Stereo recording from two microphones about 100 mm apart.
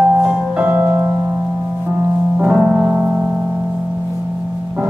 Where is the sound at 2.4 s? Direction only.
10° right (ahead or behind).